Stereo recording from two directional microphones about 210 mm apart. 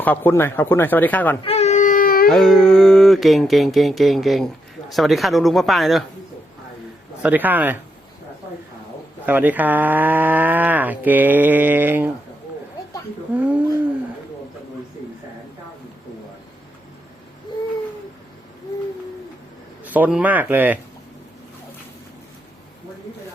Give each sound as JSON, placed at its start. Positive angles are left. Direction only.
{"t": 0.0, "sound": "speech", "side_deg": 10}
{"t": 1.5, "sound": "baby cry", "side_deg": 30}
{"t": 2.3, "sound": "speech", "side_deg": 0}
{"t": 7.2, "sound": "speech", "side_deg": -10}
{"t": 9.2, "sound": "speech", "side_deg": -10}
{"t": 17.5, "sound": "a sound", "side_deg": 20}
{"t": 19.8, "sound": "speech", "side_deg": -10}